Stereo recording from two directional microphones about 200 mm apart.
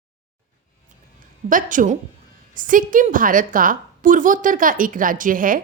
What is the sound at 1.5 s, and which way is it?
A woman's voice, 40° right (ahead or behind).